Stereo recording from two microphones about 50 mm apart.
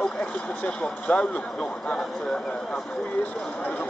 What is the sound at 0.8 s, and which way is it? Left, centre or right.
Speech, left.